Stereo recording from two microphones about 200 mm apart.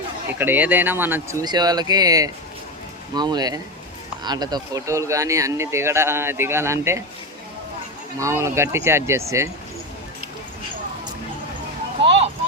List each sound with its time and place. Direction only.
0.3 s speech: 10° right (ahead or behind)
8.2 s speech: 15° right (ahead or behind)